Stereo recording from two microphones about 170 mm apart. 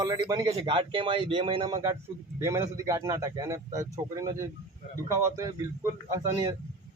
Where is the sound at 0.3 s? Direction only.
25° right (ahead or behind).